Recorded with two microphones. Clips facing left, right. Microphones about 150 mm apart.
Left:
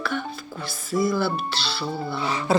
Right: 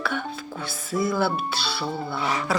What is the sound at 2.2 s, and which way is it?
Dog, 30° left (ahead or behind).